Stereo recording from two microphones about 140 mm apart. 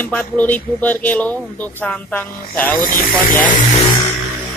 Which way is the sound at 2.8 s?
75° left (ahead or behind).